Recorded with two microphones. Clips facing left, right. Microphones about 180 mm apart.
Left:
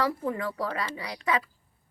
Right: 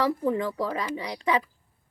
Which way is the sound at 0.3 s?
20° right (ahead or behind).